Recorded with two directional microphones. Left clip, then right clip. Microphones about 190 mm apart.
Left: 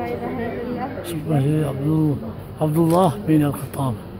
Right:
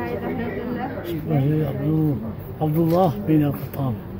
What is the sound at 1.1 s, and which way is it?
Speech, 20° left (ahead or behind).